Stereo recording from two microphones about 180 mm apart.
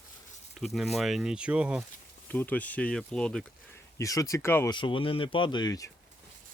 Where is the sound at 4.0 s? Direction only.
20° left (ahead or behind).